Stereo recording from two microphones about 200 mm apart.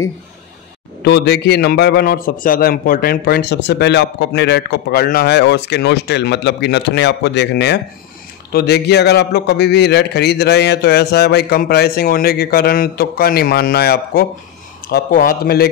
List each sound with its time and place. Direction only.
1.0 s a man's voice: 55° left (ahead or behind)